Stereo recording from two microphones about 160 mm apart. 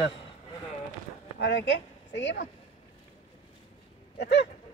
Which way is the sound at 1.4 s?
90° left.